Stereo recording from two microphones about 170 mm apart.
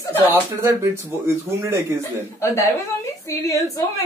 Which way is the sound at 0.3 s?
15° right (ahead or behind).